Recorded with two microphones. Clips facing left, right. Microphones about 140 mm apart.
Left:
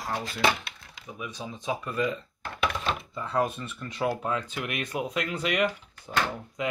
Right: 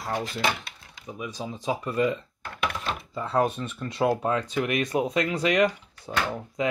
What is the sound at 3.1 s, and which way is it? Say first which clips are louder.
Speech: right 5 dB; 30° right (ahead or behind).